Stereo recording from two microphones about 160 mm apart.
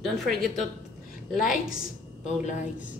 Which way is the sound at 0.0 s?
Centre (ahead or behind).